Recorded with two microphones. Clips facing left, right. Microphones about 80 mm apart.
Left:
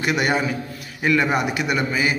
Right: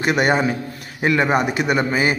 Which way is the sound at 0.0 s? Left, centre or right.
Right.